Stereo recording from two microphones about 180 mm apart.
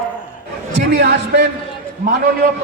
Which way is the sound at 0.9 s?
70° right (ahead or behind).